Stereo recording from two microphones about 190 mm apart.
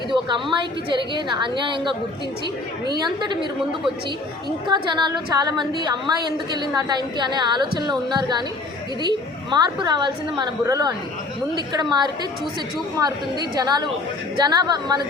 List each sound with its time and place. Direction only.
0.1 s a woman's voice: 25° right (ahead or behind)
4.7 s a woman's voice: 25° right (ahead or behind)